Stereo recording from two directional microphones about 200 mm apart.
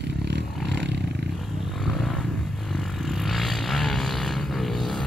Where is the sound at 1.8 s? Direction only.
Centre (ahead or behind).